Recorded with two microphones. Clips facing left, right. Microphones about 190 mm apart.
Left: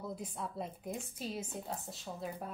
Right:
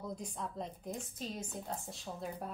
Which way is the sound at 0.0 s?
5° left (ahead or behind).